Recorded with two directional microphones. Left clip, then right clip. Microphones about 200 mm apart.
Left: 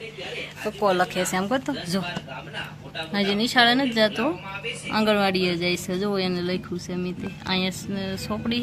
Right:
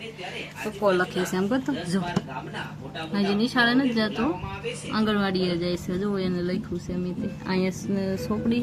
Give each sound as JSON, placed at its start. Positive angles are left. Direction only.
{"t": 0.8, "sound": "speech", "side_deg": 10}
{"t": 3.1, "sound": "a woman's voice", "side_deg": 15}
{"t": 7.4, "sound": "a sound", "side_deg": 0}